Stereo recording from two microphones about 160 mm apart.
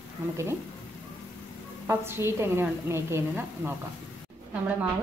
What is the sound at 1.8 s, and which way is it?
A woman's voice, 15° right (ahead or behind).